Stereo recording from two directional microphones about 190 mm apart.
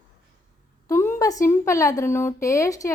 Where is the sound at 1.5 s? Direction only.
15° left (ahead or behind).